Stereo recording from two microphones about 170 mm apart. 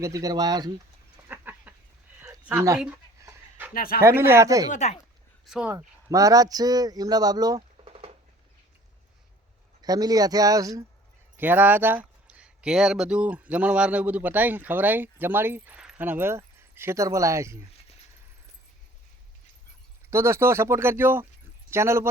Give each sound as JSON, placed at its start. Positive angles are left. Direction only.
{"t": 0.0, "sound": "speech", "side_deg": -20}
{"t": 1.3, "sound": "a sound", "side_deg": -10}
{"t": 3.8, "sound": "speech", "side_deg": 60}
{"t": 4.0, "sound": "speech", "side_deg": -15}
{"t": 4.7, "sound": "speech", "side_deg": 40}
{"t": 5.5, "sound": "speech", "side_deg": -5}
{"t": 5.7, "sound": "speech", "side_deg": -20}
{"t": 7.9, "sound": "rodents", "side_deg": -35}
{"t": 9.8, "sound": "speech", "side_deg": -20}
{"t": 20.1, "sound": "speech", "side_deg": -15}